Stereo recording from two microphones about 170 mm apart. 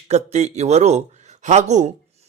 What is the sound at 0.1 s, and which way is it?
Speech, 40° right (ahead or behind).